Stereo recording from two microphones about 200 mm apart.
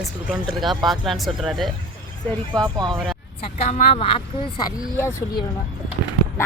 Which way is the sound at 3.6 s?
35° left (ahead or behind).